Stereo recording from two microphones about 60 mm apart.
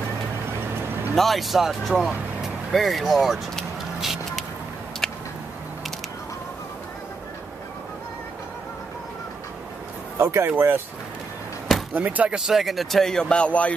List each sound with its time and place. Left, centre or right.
0.5 s vehicle: right
1.1 s speech: centre
2.7 s vehicle: centre
5.0 s a sound: centre
10.1 s speech: right
11.9 s speech: right
12.4 s speech: centre; by 13.7 s left